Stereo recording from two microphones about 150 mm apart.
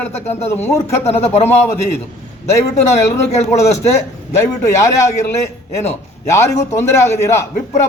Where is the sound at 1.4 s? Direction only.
15° left (ahead or behind).